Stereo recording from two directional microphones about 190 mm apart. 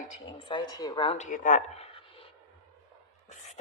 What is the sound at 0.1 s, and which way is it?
Speech, 25° left (ahead or behind).